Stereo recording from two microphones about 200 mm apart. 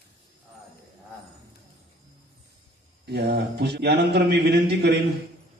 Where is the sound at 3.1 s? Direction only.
55° right (ahead or behind).